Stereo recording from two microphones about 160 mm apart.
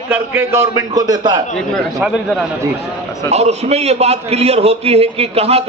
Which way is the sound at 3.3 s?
40° right (ahead or behind).